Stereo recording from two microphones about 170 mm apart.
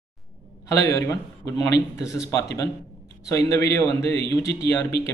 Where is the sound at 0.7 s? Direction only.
20° left (ahead or behind).